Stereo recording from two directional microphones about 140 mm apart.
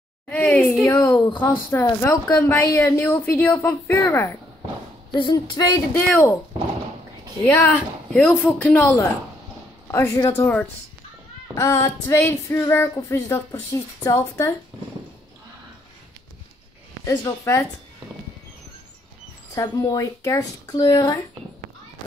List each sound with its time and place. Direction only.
0.3 s a woman's voice: 10° left (ahead or behind)
5.1 s female singing: 30° left (ahead or behind)
5.9 s a woman's voice: 15° left (ahead or behind)
7.4 s a woman's voice: 15° left (ahead or behind)
11.5 s female singing: 20° left (ahead or behind)
17.0 s female singing: 20° left (ahead or behind)
19.5 s female singing: 25° left (ahead or behind)